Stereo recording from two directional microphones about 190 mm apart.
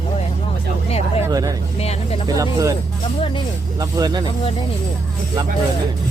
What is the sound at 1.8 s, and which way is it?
Speech, 35° left (ahead or behind).